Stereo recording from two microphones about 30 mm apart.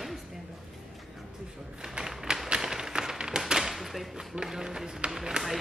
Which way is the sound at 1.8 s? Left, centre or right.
Centre.